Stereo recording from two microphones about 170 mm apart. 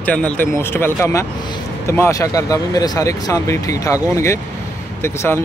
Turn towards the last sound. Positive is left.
turn(degrees=15)  # may be behind; listen again after turning